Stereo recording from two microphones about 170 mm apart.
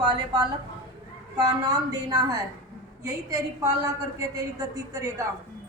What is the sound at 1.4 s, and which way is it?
A woman's voice, 20° right (ahead or behind).